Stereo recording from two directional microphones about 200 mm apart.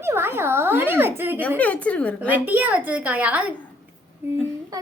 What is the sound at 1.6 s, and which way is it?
Speech, 5° left (ahead or behind).